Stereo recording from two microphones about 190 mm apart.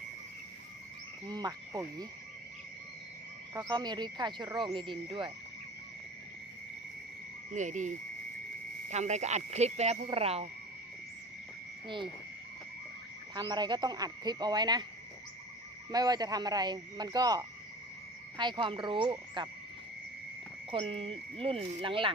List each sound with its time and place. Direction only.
1.2 s speech: 20° right (ahead or behind)
3.5 s speech: 20° right (ahead or behind)
7.5 s speech: 40° right (ahead or behind)
8.9 s speech: 35° right (ahead or behind)
13.3 s speech: 20° right (ahead or behind)
15.9 s speech: 20° right (ahead or behind)
20.7 s speech: 30° right (ahead or behind)